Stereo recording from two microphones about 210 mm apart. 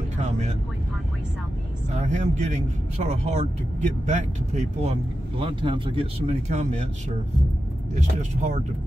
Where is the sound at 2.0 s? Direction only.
35° right (ahead or behind).